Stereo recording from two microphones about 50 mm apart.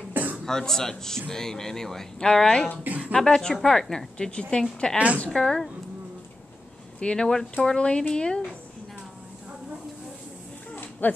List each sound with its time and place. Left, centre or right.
0.1 s throat clearing: right
0.5 s a woman's voice: centre
4.9 s a woman's voice: right
5.3 s speech: centre
7.0 s speech: centre
10.8 s a sound: left